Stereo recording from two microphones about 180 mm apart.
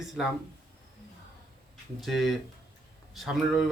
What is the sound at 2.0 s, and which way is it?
A man's voice, centre (ahead or behind).